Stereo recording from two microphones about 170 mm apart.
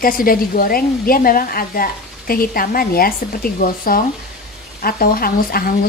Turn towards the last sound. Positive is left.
turn(degrees=60)  # may be behind; listen again after turning